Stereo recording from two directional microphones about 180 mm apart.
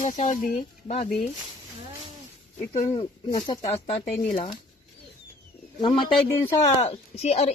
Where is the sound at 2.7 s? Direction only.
35° left (ahead or behind).